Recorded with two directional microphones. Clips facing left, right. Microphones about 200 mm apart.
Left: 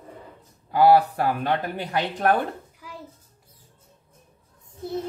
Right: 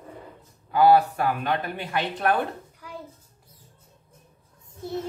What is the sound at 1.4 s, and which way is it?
Speech, 40° left (ahead or behind).